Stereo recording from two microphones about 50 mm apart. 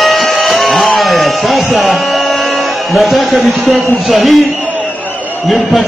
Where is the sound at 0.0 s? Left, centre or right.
Centre.